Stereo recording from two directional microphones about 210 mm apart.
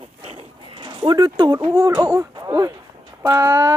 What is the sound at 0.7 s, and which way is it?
Speech, 20° right (ahead or behind).